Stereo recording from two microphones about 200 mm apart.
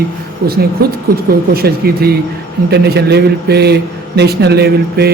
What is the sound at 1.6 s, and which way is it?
A man's voice, 50° right (ahead or behind).